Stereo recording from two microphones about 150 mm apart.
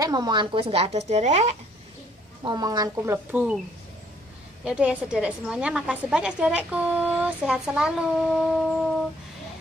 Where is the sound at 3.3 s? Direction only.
10° right (ahead or behind).